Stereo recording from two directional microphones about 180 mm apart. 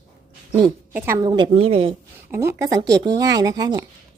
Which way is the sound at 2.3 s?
15° right (ahead or behind).